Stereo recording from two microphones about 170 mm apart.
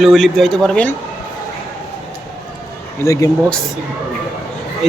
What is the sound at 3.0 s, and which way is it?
Speech, 20° left (ahead or behind).